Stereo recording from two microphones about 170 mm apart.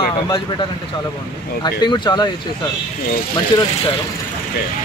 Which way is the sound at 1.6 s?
25° left (ahead or behind).